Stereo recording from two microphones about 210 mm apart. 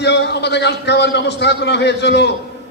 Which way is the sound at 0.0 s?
55° left (ahead or behind).